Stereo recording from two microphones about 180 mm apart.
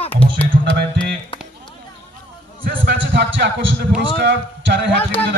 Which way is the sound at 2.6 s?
50° right (ahead or behind).